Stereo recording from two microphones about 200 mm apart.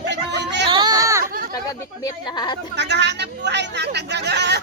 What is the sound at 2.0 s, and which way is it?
Speech, 20° left (ahead or behind).